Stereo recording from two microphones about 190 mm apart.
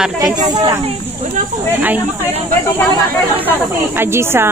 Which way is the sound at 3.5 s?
10° right (ahead or behind).